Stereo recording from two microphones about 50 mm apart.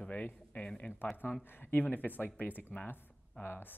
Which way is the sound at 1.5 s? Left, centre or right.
Left.